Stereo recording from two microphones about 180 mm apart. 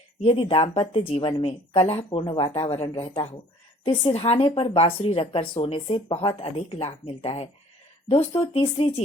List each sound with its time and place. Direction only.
0.2 s speech: 35° left (ahead or behind)